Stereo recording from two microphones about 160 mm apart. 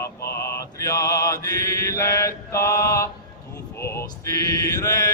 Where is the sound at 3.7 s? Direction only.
15° left (ahead or behind).